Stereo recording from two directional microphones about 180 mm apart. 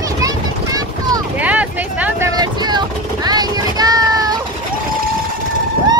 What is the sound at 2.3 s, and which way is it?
Vehicle, 25° right (ahead or behind).